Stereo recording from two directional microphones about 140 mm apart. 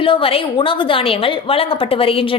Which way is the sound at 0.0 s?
40° left (ahead or behind).